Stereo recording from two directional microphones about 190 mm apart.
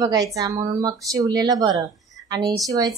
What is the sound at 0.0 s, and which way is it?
A woman's voice, 20° right (ahead or behind).